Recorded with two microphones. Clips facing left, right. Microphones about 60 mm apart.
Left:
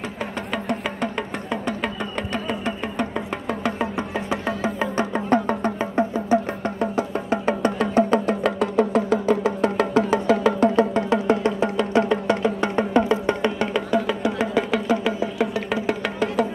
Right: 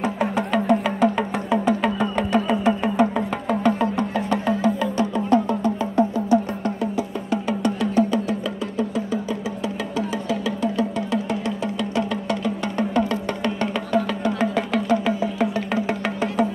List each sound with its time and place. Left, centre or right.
0.5 s music: centre
4.7 s music: left
8.7 s music: left; by 13.7 s centre
13.7 s music: centre